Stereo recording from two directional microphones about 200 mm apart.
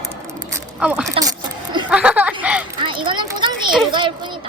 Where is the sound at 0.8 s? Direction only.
5° right (ahead or behind).